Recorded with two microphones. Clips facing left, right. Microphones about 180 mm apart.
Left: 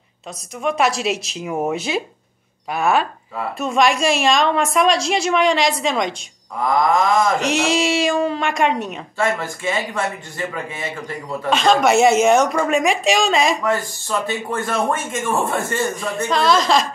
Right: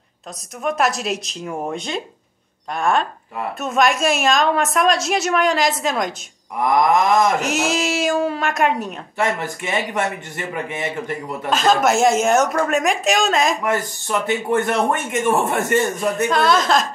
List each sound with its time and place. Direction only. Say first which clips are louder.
0.7 s a woman's voice: left 1 dB; centre (ahead or behind)
6.7 s speech: right 1 dB; 20° right (ahead or behind)
7.3 s a woman's voice: left 2 dB; centre (ahead or behind)
9.2 s speech: left 1 dB; 20° right (ahead or behind)
11.5 s a woman's voice: left 2 dB; 5° right (ahead or behind)
13.7 s speech: even; 20° right (ahead or behind)
16.3 s a woman's voice: left 2 dB; centre (ahead or behind)